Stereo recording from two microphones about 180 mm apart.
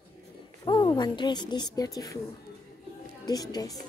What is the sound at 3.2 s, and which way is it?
Speech, 20° left (ahead or behind).